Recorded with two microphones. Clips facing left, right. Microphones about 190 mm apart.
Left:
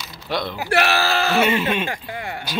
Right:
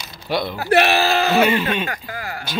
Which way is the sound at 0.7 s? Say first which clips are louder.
Right 4 dB; 20° right (ahead or behind).